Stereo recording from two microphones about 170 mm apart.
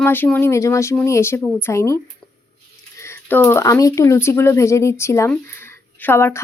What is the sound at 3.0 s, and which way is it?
Speech, 10° left (ahead or behind).